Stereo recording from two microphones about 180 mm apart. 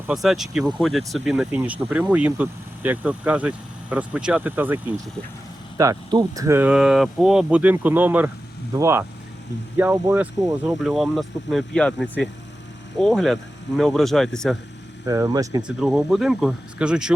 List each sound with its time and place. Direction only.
0.1 s speech: centre (ahead or behind)
15.0 s speech: 15° right (ahead or behind)
15.6 s speech: 5° right (ahead or behind)